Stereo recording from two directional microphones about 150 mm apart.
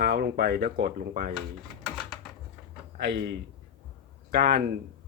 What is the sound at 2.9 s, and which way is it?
Speech, 90° right.